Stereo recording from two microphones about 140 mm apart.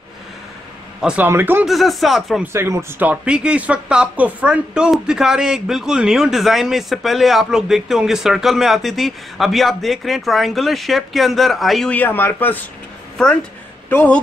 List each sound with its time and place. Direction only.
1.0 s speech: 10° right (ahead or behind)
1.7 s speech: centre (ahead or behind)
2.4 s speech: 20° right (ahead or behind); by 11.9 s centre (ahead or behind)
11.9 s a man's voice: 15° left (ahead or behind)
13.8 s speech: 10° left (ahead or behind)